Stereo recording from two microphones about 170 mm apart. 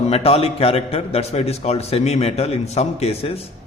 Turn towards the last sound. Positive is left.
turn(degrees=35)  # may be behind; listen again after turning